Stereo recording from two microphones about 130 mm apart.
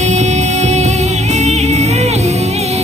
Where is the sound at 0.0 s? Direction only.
60° right (ahead or behind).